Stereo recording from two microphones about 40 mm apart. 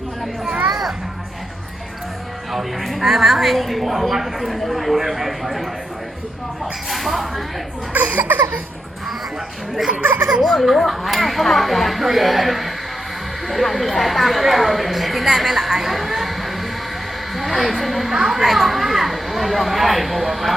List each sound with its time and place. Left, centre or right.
0.7 s children playing: centre
2.5 s a woman's voice: centre
6.9 s a sound: centre
7.9 s a sound: right
10.2 s speech: right
10.4 s a woman's voice: centre